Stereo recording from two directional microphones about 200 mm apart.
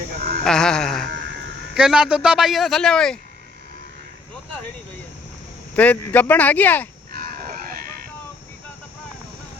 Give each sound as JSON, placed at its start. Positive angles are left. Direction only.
{"t": 0.4, "sound": "a man's voice", "side_deg": 5}
{"t": 5.7, "sound": "speech", "side_deg": 5}
{"t": 7.1, "sound": "a sound", "side_deg": -50}